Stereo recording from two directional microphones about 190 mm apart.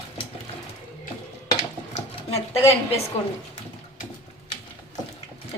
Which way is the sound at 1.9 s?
30° left (ahead or behind).